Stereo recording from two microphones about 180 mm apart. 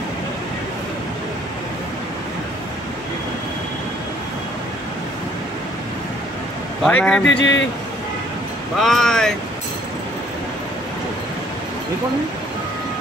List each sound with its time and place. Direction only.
6.8 s a man's voice: 5° left (ahead or behind)
7.2 s speech: 90° left
8.7 s speech: centre (ahead or behind)